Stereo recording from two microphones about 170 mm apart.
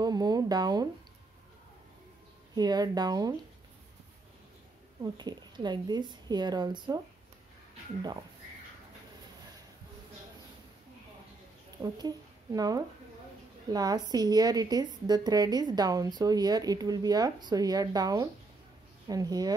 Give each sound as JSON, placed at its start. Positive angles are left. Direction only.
{"t": 0.0, "sound": "a woman's voice", "side_deg": -25}
{"t": 2.5, "sound": "a woman's voice", "side_deg": -25}
{"t": 5.0, "sound": "a woman's voice", "side_deg": -25}
{"t": 8.0, "sound": "a woman's voice", "side_deg": -25}
{"t": 11.8, "sound": "a woman's voice", "side_deg": -20}